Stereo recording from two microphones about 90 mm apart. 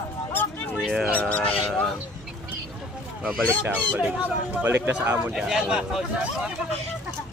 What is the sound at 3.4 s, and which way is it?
Speech, 25° right (ahead or behind).